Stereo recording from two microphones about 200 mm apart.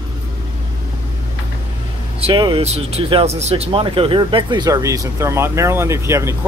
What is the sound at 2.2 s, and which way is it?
Speech, 25° right (ahead or behind).